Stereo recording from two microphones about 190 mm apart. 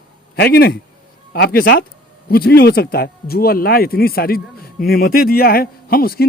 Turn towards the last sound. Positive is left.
turn(degrees=50)  # may be behind; listen again after turning